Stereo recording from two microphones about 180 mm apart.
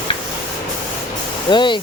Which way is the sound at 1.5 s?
25° left (ahead or behind).